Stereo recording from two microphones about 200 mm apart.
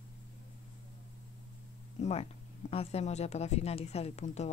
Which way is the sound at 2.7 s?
30° left (ahead or behind).